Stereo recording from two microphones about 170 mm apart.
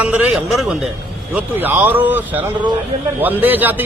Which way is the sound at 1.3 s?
10° right (ahead or behind).